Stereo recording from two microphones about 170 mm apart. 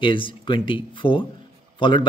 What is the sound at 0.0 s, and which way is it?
Speech, 30° left (ahead or behind).